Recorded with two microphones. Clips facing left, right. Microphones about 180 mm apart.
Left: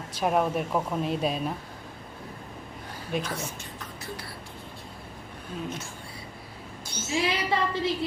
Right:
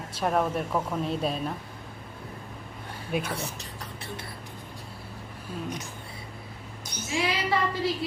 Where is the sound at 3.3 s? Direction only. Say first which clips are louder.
Right 1 dB; 35° right (ahead or behind).